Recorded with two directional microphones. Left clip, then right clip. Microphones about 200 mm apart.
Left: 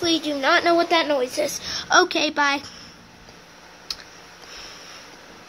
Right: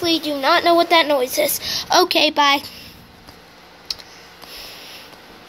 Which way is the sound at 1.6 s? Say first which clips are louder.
Even; 10° left (ahead or behind).